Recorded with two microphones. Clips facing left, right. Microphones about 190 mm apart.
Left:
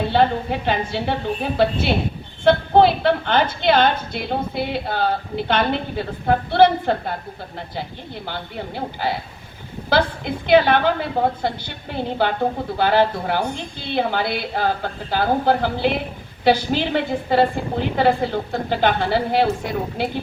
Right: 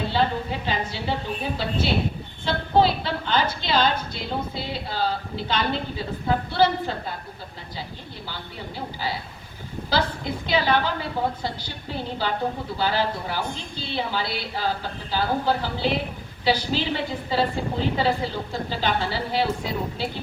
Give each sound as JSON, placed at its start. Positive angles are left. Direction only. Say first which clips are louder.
{"t": 0.1, "sound": "a woman's voice", "louder": "left 6 dB", "side_deg": 60}
{"t": 8.3, "sound": "a woman's voice", "louder": "left 7 dB", "side_deg": 60}
{"t": 10.4, "sound": "a woman's voice", "louder": "left 8 dB", "side_deg": 60}